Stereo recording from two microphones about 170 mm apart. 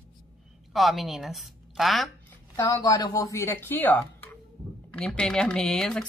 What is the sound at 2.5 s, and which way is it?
Speech, 25° left (ahead or behind).